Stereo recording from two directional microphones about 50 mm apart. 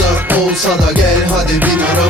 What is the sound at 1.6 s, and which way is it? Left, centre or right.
Music, right.